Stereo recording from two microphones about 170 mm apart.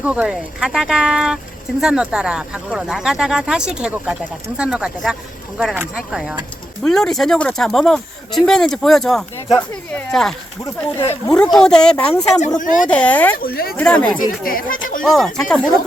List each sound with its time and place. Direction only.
0.0 s speech: 5° right (ahead or behind)
10.6 s speech: 15° left (ahead or behind)
11.5 s speech: 5° left (ahead or behind)
12.5 s speech: 50° left (ahead or behind)
12.9 s speech: 10° left (ahead or behind)
13.3 s speech: 60° left (ahead or behind)
13.7 s speech: 10° left (ahead or behind)
14.2 s speech: 55° left (ahead or behind)
15.0 s speech: centre (ahead or behind)